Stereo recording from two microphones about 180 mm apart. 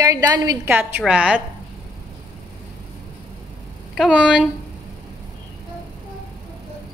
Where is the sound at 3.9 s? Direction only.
5° right (ahead or behind).